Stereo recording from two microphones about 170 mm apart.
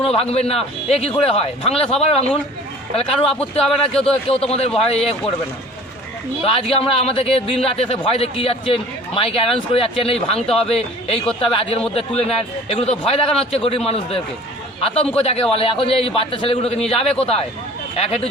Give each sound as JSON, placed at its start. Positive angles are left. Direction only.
{"t": 0.0, "sound": "speech", "side_deg": 35}
{"t": 6.4, "sound": "speech", "side_deg": 35}